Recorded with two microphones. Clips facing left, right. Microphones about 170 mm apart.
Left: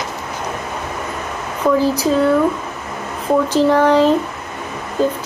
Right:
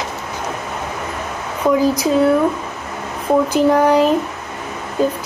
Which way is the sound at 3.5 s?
10° right (ahead or behind).